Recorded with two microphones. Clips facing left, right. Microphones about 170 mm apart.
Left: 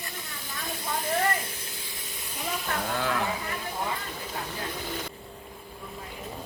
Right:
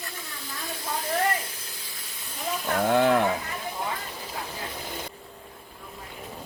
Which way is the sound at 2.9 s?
60° right (ahead or behind).